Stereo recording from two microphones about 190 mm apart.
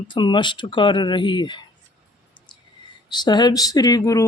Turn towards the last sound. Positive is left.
turn(degrees=20)  # may be behind; listen again after turning